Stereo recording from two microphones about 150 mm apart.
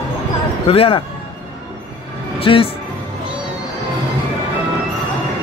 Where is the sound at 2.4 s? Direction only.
35° left (ahead or behind).